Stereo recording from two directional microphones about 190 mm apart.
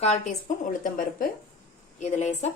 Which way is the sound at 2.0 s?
35° left (ahead or behind).